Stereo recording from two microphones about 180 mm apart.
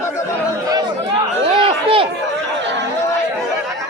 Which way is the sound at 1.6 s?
30° right (ahead or behind).